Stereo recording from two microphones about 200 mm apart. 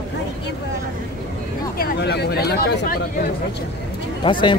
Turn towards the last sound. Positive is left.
turn(degrees=25)  # may be behind; listen again after turning